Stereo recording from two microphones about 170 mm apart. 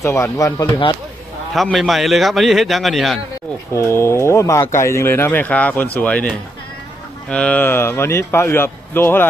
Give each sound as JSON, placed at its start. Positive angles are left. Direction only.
{"t": 0.0, "sound": "speech", "side_deg": 15}
{"t": 1.5, "sound": "a man's voice", "side_deg": 0}
{"t": 3.8, "sound": "speech", "side_deg": 15}